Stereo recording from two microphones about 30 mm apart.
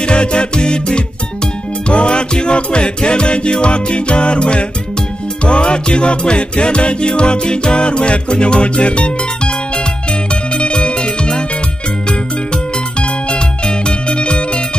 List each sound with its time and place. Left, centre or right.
0.0 s music: left
10.5 s music: left
13.3 s music: left